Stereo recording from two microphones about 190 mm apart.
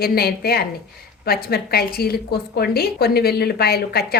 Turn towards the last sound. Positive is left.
turn(degrees=55)  # may be behind; listen again after turning